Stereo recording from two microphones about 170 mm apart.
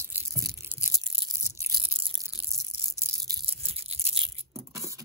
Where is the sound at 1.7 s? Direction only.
30° right (ahead or behind).